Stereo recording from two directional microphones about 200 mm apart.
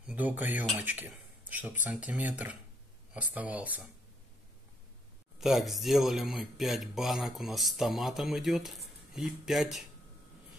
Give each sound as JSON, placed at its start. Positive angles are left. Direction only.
{"t": 0.0, "sound": "speech", "side_deg": -5}
{"t": 5.4, "sound": "speech", "side_deg": 0}